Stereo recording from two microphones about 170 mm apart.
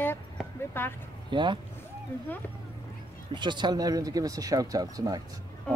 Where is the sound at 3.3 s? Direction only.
25° right (ahead or behind).